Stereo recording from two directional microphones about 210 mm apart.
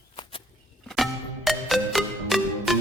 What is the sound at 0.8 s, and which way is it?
Music, centre (ahead or behind).